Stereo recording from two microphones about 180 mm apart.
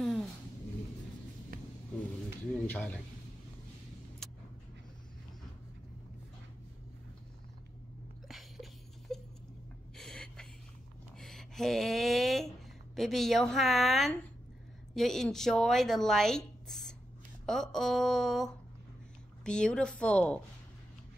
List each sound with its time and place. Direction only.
0.0 s vehicle: centre (ahead or behind)
1.5 s vehicle: 50° right (ahead or behind)
2.5 s speech: 5° left (ahead or behind)
4.2 s vehicle: centre (ahead or behind)
8.3 s a sound: centre (ahead or behind)
9.9 s gasp: 5° left (ahead or behind)
11.1 s a sound: centre (ahead or behind)
12.9 s a woman's voice: centre (ahead or behind)